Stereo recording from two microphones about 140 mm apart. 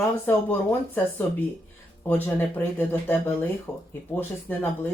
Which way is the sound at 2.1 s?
15° left (ahead or behind).